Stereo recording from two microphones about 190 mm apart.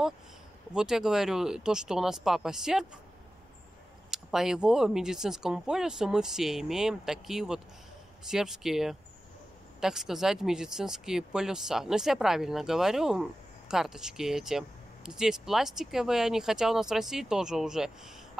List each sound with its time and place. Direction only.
0.7 s speech: 5° right (ahead or behind)
4.1 s speech: centre (ahead or behind)